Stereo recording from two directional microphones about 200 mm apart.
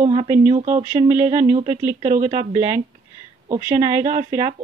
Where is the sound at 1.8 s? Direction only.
10° right (ahead or behind).